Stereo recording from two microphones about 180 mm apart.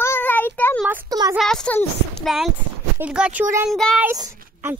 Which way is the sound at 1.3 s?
5° left (ahead or behind).